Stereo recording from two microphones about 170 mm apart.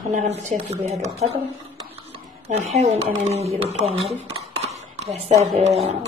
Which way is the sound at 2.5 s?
40° right (ahead or behind).